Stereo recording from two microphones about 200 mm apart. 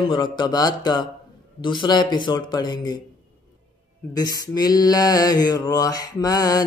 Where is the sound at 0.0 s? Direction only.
25° left (ahead or behind).